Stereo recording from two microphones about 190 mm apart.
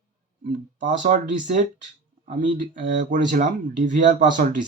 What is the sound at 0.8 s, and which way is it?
Speech, 40° right (ahead or behind).